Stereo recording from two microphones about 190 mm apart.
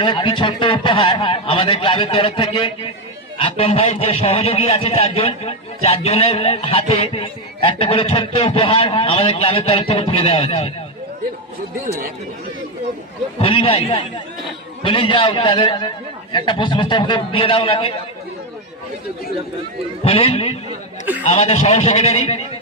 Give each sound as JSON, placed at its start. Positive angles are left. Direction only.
{"t": 0.0, "sound": "a man's voice", "side_deg": 25}
{"t": 13.4, "sound": "a man's voice", "side_deg": 30}
{"t": 20.1, "sound": "a man's voice", "side_deg": 30}